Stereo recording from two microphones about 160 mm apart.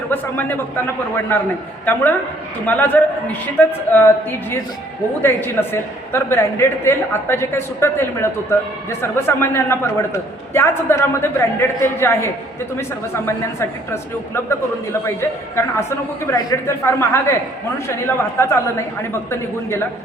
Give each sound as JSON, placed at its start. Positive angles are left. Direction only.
{"t": 0.1, "sound": "a man's voice", "side_deg": 15}